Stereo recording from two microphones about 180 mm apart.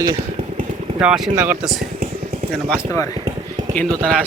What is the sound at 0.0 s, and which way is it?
Vehicle, 20° right (ahead or behind).